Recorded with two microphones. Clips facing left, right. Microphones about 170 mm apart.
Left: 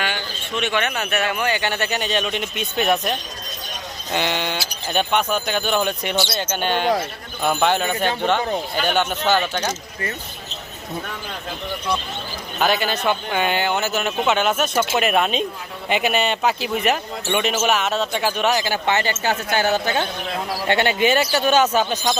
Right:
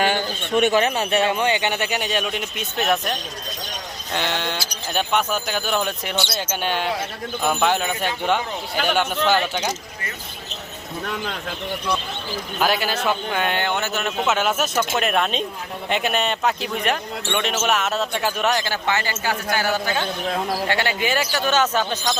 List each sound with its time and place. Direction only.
0.0 s speech: 45° right (ahead or behind)
0.8 s speech: 30° right (ahead or behind); by 9.7 s 10° right (ahead or behind)
12.5 s speech: 5° right (ahead or behind)
18.6 s speech: 15° left (ahead or behind)